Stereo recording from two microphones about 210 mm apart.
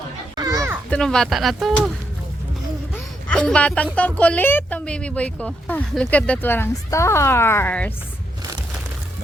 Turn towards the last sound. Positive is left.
turn(degrees=10)  # may be behind; listen again after turning